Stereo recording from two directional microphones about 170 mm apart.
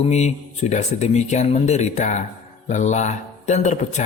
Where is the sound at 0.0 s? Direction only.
40° left (ahead or behind).